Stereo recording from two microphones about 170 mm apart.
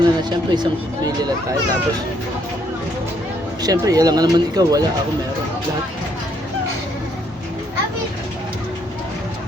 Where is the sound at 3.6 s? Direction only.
20° right (ahead or behind).